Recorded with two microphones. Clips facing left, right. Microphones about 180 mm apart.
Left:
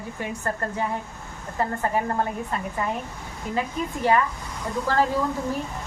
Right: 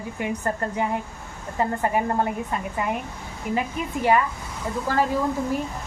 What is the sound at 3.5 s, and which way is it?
Speech, 10° right (ahead or behind).